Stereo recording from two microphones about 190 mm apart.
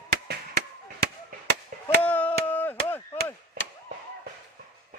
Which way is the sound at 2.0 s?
10° left (ahead or behind).